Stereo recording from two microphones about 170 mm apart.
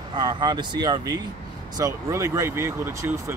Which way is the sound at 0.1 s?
30° right (ahead or behind).